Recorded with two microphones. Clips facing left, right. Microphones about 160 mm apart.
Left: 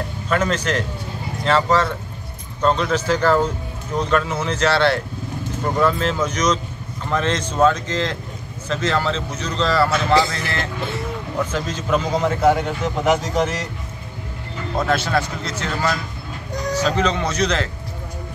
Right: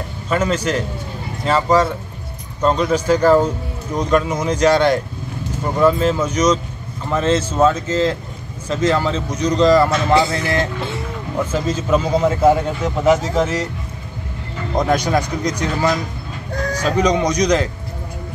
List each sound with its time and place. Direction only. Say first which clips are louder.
0.3 s speech: right 2 dB; 10° right (ahead or behind)
14.8 s speech: right 3 dB; 15° right (ahead or behind)